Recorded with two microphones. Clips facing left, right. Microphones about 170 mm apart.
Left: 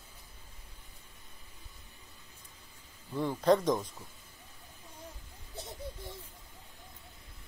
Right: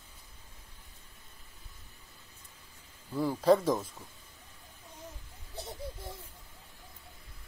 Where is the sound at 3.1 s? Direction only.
5° right (ahead or behind).